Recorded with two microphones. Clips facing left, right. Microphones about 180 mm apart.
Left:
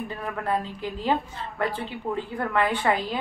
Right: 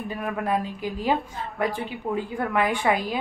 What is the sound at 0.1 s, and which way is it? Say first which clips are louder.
Speech: right 3 dB; 10° right (ahead or behind).